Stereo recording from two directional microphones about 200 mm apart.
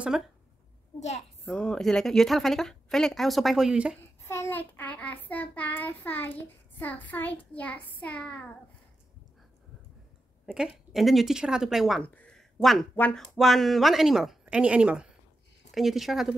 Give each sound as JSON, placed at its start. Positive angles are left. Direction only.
{"t": 0.1, "sound": "speech", "side_deg": -5}
{"t": 0.9, "sound": "a child's voice", "side_deg": 35}
{"t": 1.4, "sound": "speech", "side_deg": 5}
{"t": 4.2, "sound": "child singing", "side_deg": 15}
{"t": 10.4, "sound": "speech", "side_deg": -5}